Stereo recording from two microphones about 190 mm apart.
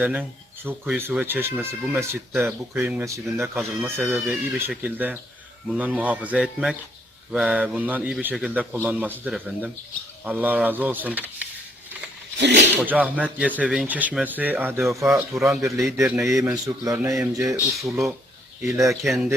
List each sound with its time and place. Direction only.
0.0 s speech: 10° right (ahead or behind)
12.4 s a sound: 65° right (ahead or behind)
12.8 s speech: 10° right (ahead or behind)
17.8 s speech: centre (ahead or behind)
18.6 s speech: 15° right (ahead or behind)
19.0 s speech: centre (ahead or behind)